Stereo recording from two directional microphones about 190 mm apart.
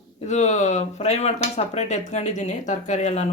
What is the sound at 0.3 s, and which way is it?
Speech, 40° left (ahead or behind).